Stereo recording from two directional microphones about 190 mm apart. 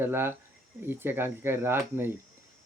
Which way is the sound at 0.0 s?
10° right (ahead or behind).